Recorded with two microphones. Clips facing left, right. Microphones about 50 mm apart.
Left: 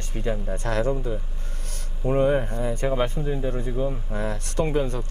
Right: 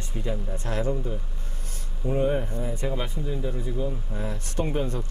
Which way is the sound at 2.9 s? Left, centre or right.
Left.